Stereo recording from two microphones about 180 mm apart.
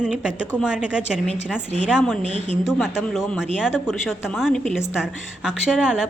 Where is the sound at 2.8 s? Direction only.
Centre (ahead or behind).